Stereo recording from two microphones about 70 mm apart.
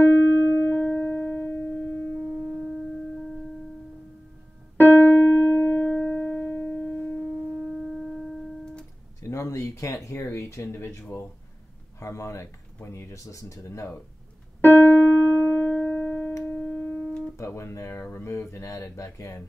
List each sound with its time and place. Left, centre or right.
0.0 s music: left
4.7 s piano: left
6.8 s a sound: centre
9.3 s speech: left
14.6 s piano: left; by 16.3 s centre
16.4 s music: centre
17.4 s speech: left